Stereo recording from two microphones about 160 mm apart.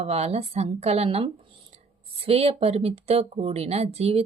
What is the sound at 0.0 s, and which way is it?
A woman's voice, 40° right (ahead or behind).